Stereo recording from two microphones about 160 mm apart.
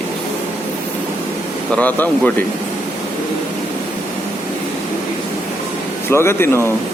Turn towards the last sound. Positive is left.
turn(degrees=15)  # may be behind; listen again after turning